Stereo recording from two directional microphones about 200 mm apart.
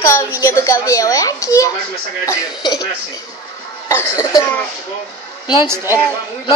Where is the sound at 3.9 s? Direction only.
15° left (ahead or behind).